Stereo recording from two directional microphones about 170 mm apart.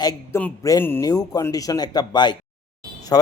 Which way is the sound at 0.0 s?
15° left (ahead or behind).